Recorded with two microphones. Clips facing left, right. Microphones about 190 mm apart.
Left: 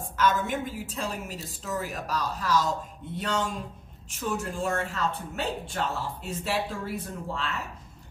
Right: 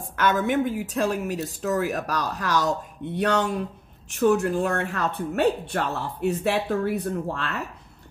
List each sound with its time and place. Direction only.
0.1 s a woman's voice: 65° right (ahead or behind)